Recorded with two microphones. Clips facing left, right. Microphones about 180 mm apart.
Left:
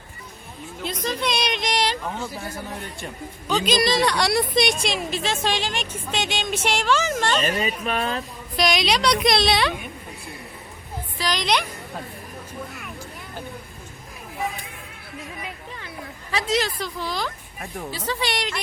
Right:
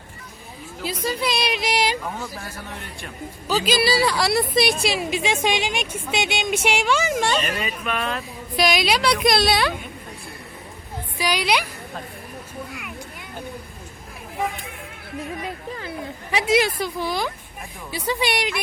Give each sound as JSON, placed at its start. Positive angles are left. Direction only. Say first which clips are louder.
{"t": 0.8, "sound": "a woman's voice", "louder": "right 1 dB", "side_deg": -5}
{"t": 7.4, "sound": "speech", "louder": "left 3 dB", "side_deg": 30}
{"t": 8.5, "sound": "speech", "louder": "right 1 dB", "side_deg": -5}
{"t": 11.2, "sound": "a woman's voice", "louder": "right 1 dB", "side_deg": -10}
{"t": 16.3, "sound": "a woman's voice", "louder": "right 4 dB", "side_deg": -10}